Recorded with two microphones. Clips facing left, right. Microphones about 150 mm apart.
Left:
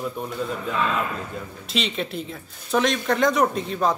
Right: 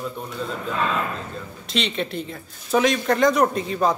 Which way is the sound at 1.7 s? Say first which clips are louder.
Right 1 dB; centre (ahead or behind).